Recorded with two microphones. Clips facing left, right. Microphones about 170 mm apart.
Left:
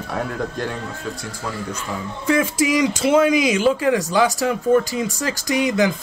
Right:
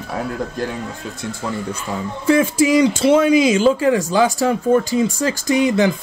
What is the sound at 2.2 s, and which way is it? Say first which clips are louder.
Speech: right 4 dB; 30° right (ahead or behind).